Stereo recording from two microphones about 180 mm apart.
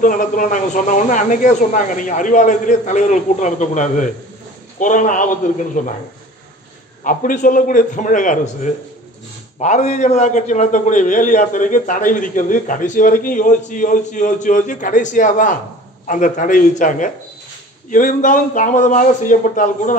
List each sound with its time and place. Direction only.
0.0 s a man's voice: 45° left (ahead or behind)
7.0 s a man's voice: 50° left (ahead or behind)
9.6 s a man's voice: 40° left (ahead or behind)